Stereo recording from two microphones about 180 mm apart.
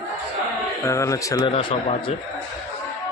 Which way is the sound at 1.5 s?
30° left (ahead or behind).